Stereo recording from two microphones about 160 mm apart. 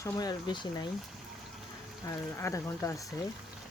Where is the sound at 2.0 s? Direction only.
20° left (ahead or behind).